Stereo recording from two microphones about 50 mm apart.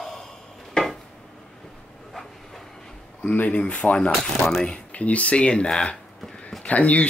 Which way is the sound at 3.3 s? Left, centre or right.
Left.